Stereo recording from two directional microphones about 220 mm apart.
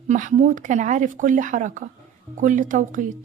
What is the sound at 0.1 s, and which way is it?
Speech, 35° right (ahead or behind).